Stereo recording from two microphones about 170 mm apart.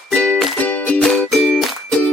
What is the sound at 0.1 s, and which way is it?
Music, 5° left (ahead or behind).